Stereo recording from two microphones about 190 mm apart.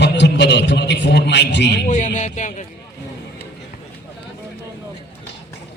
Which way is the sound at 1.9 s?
40° left (ahead or behind).